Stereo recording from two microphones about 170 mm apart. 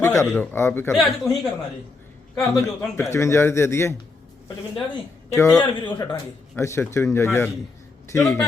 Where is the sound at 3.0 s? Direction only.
15° left (ahead or behind).